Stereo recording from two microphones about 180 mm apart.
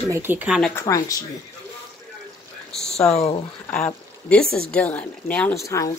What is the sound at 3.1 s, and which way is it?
Speech, 35° left (ahead or behind).